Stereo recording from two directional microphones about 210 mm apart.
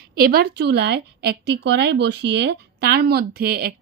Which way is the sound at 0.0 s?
45° right (ahead or behind).